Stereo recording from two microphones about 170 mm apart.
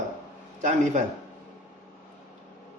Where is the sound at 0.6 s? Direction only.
45° right (ahead or behind).